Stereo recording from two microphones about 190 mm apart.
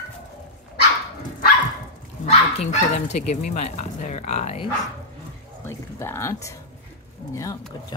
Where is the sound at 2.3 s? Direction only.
35° left (ahead or behind).